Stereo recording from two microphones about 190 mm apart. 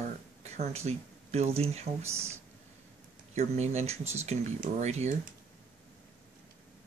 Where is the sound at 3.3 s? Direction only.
35° right (ahead or behind).